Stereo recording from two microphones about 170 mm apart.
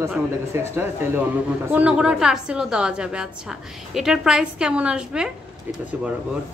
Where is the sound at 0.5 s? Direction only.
15° right (ahead or behind).